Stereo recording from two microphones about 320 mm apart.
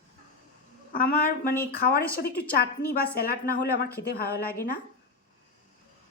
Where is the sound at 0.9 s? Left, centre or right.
Left.